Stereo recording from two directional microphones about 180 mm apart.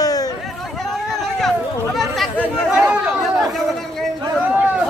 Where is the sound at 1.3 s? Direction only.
Centre (ahead or behind).